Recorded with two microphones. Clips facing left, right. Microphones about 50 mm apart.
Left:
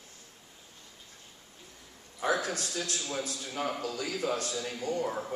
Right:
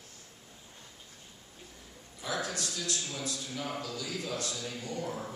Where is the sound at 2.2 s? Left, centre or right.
Left.